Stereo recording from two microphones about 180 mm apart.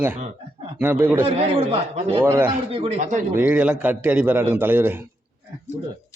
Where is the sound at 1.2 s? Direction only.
30° right (ahead or behind).